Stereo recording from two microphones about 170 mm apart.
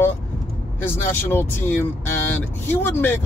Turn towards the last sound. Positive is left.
turn(degrees=10)  # may be behind; listen again after turning